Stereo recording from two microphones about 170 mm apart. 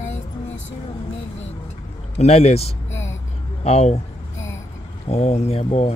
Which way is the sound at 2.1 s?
35° left (ahead or behind).